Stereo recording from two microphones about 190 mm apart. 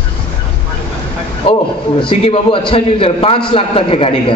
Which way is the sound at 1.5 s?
25° left (ahead or behind).